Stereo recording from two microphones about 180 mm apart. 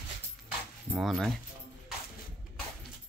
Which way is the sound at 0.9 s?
Centre (ahead or behind).